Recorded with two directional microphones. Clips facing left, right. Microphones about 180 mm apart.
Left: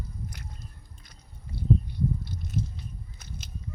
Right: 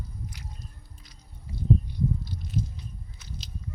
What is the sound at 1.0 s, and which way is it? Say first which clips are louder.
Chewing: right 2 dB; 50° left (ahead or behind).